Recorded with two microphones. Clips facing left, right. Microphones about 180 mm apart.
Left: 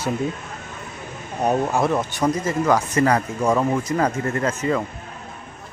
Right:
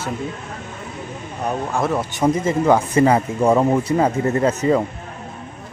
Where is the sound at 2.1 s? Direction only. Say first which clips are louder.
Right 3 dB; 25° right (ahead or behind).